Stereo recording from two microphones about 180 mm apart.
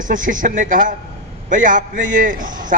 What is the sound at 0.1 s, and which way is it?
A man's voice, 45° right (ahead or behind).